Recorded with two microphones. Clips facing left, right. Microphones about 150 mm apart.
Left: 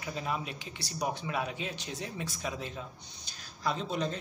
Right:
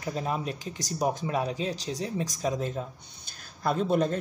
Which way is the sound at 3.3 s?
50° right (ahead or behind).